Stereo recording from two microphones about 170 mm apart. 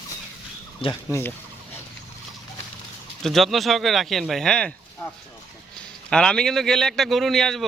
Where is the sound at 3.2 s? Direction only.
Centre (ahead or behind).